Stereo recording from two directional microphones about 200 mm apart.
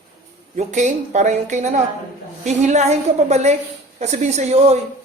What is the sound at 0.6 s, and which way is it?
Speech, 35° right (ahead or behind).